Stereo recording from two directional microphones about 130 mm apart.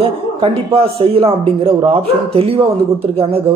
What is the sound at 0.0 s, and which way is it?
Speech, 45° right (ahead or behind).